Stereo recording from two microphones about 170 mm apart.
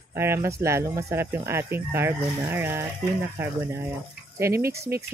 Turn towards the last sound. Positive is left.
turn(degrees=-15)  # may be behind; listen again after turning